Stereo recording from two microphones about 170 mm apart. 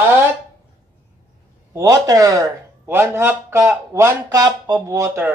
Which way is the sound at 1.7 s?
20° right (ahead or behind).